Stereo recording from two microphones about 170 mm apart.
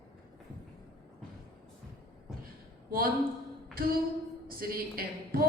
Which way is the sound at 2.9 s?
60° right (ahead or behind).